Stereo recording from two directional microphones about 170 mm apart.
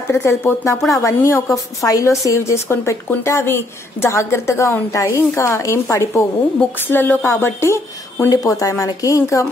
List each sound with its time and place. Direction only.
0.1 s a woman's voice: 15° left (ahead or behind)